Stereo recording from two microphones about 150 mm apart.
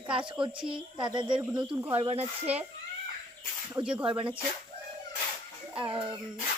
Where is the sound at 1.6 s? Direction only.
15° right (ahead or behind).